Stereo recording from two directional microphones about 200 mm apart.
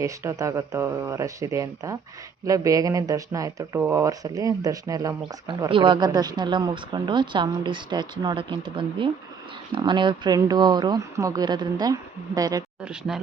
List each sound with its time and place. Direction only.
0.0 s speech: 15° right (ahead or behind)
12.8 s speech: 5° right (ahead or behind)